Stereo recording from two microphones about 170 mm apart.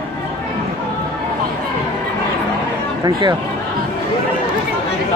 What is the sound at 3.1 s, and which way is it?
Speech, 25° right (ahead or behind).